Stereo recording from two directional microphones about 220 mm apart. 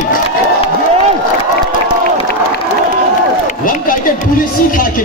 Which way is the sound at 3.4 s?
35° left (ahead or behind).